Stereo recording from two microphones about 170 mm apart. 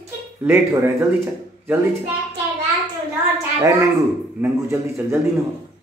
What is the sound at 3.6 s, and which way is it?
A man's voice, 15° right (ahead or behind).